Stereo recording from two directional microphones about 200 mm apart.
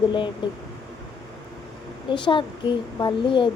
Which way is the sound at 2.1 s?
25° left (ahead or behind).